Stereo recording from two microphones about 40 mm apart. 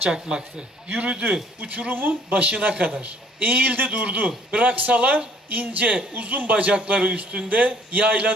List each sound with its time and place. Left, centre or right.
0.1 s speech: right
0.8 s a man's voice: right
1.9 s speech: right
2.3 s a man's voice: right